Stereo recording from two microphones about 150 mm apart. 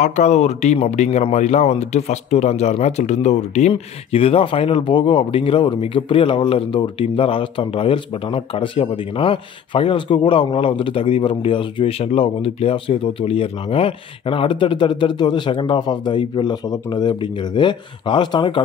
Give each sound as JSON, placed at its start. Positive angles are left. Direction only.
{"t": 0.0, "sound": "speech", "side_deg": 50}